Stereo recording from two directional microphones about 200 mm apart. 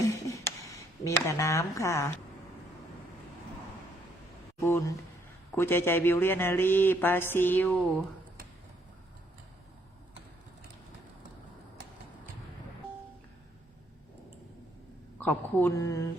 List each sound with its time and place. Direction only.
0.0 s a sound: 15° left (ahead or behind)
4.6 s speech: 10° left (ahead or behind)
15.2 s speech: 10° left (ahead or behind)